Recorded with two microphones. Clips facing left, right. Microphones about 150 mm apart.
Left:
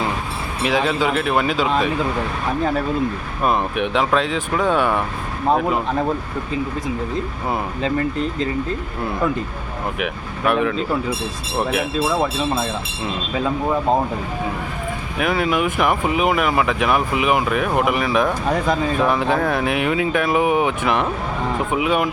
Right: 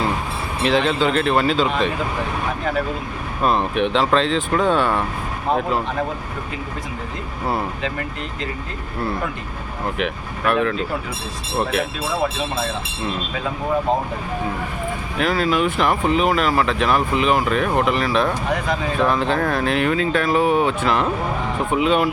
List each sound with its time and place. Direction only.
0.6 s speech: 10° left (ahead or behind)
3.4 s speech: 10° left (ahead or behind)
10.0 s speech: 15° left (ahead or behind)
15.2 s speech: 20° left (ahead or behind)